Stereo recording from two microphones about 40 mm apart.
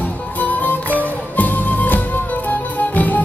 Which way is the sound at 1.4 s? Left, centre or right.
Left.